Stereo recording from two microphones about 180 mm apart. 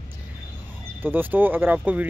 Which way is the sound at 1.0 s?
10° right (ahead or behind).